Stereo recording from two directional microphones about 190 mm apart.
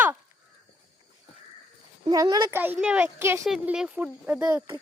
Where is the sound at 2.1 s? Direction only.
20° right (ahead or behind).